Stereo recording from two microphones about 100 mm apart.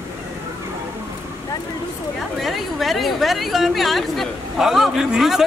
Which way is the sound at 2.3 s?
Centre (ahead or behind).